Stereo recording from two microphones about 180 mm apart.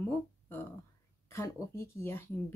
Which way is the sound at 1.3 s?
15° left (ahead or behind).